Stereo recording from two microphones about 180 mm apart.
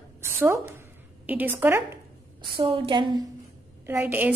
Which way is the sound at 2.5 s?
30° right (ahead or behind).